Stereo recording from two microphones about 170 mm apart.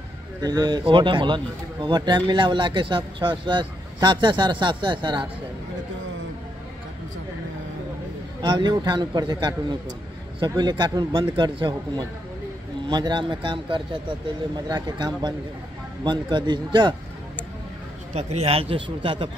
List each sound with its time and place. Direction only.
0.4 s a man's voice: 25° right (ahead or behind)
8.4 s a man's voice: 25° right (ahead or behind)
18.1 s a man's voice: 40° right (ahead or behind)